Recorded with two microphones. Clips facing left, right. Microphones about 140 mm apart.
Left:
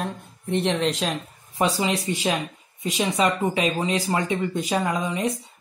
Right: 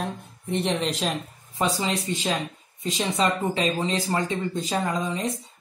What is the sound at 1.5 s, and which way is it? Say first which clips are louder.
Speech: left 3 dB; 10° left (ahead or behind).